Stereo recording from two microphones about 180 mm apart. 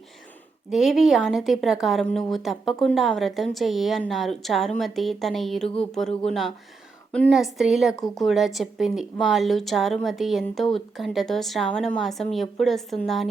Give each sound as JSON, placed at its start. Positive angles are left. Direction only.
{"t": 0.7, "sound": "a woman's voice", "side_deg": 0}